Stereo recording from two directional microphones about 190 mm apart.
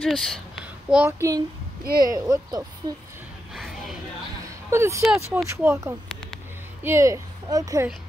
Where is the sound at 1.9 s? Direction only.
50° right (ahead or behind).